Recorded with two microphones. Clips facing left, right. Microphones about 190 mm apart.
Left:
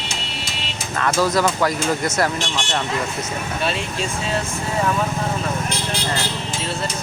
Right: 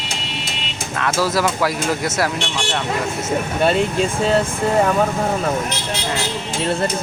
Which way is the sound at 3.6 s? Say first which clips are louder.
Right 9 dB; 55° right (ahead or behind).